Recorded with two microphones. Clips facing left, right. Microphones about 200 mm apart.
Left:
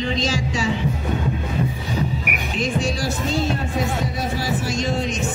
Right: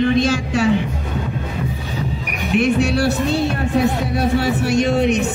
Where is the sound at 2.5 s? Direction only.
65° right (ahead or behind).